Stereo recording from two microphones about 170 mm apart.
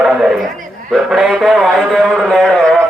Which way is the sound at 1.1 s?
Centre (ahead or behind).